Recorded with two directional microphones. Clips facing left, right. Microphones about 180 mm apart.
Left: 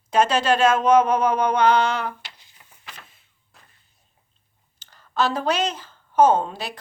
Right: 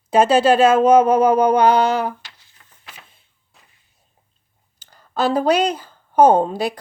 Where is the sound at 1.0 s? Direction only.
30° right (ahead or behind).